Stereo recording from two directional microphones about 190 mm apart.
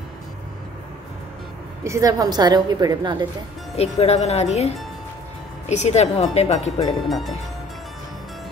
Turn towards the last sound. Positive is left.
turn(degrees=0)  # may be behind; listen again after turning